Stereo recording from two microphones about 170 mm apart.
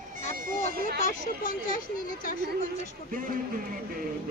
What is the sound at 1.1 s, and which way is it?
Speech, 50° left (ahead or behind).